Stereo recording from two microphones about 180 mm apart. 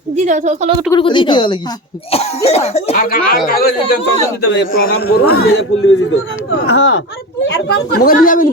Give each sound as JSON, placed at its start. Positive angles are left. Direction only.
{"t": 0.3, "sound": "a woman's voice", "side_deg": -40}
{"t": 0.9, "sound": "speech", "side_deg": 25}
{"t": 2.9, "sound": "a man's voice", "side_deg": 55}
{"t": 6.7, "sound": "speech", "side_deg": 85}
{"t": 7.4, "sound": "speech", "side_deg": 70}